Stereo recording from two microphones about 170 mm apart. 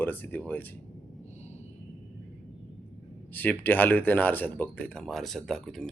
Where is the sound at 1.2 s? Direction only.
40° left (ahead or behind).